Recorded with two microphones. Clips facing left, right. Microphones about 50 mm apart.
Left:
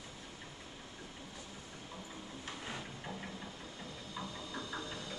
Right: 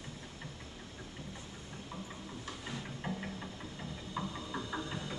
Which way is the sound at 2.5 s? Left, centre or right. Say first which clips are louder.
Even; left.